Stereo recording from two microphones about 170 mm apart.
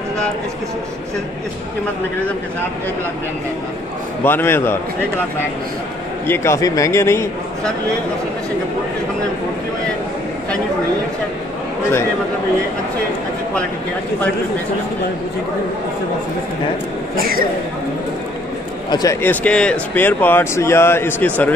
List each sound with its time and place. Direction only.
4.2 s speech: 10° left (ahead or behind)
6.2 s speech: 15° left (ahead or behind)
18.9 s speech: 25° left (ahead or behind)
19.2 s speech: 5° left (ahead or behind)